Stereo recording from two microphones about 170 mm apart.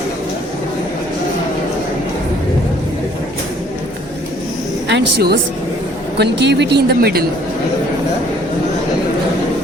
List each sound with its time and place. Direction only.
4.9 s a woman's voice: 80° right
6.1 s speech: 85° right; by 7.3 s 65° right (ahead or behind)